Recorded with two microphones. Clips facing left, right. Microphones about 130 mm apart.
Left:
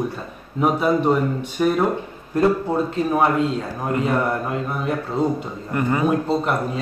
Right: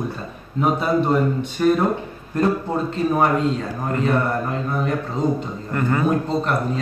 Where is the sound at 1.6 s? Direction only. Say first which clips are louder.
Right 2 dB; 5° left (ahead or behind).